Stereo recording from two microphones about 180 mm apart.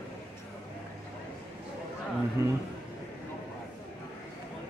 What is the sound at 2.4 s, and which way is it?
Speech, 15° right (ahead or behind).